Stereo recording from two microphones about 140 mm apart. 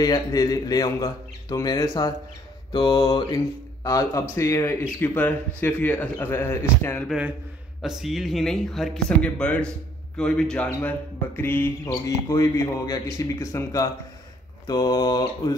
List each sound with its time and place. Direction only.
0.0 s a man's voice: 25° left (ahead or behind)
2.7 s mantra: 30° left (ahead or behind)
3.8 s a man's voice: 25° left (ahead or behind)
7.8 s a man's voice: 5° right (ahead or behind); by 15.5 s 30° left (ahead or behind)